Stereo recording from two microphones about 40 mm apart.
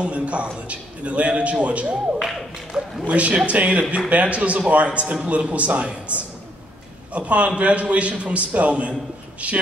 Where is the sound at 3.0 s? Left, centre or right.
Right.